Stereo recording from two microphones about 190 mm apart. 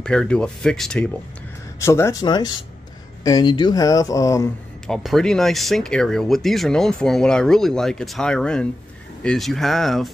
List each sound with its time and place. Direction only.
0.0 s speech: 5° left (ahead or behind)
1.8 s speech: 15° left (ahead or behind)
4.8 s speech: centre (ahead or behind)